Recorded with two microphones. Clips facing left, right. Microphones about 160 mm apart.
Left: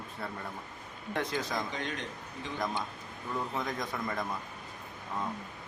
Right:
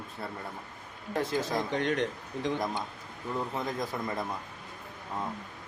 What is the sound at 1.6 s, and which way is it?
Speech, 70° right (ahead or behind).